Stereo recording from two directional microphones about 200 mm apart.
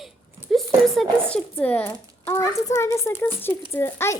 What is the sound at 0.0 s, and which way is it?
A woman's voice, centre (ahead or behind).